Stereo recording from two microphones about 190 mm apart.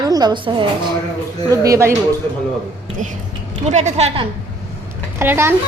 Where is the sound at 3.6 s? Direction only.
35° right (ahead or behind).